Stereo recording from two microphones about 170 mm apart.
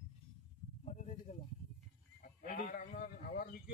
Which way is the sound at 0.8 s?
45° left (ahead or behind).